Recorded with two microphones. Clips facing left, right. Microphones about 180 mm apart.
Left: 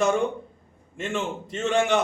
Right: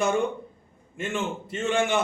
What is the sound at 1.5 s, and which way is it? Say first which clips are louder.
Speech: left 3 dB; 40° left (ahead or behind).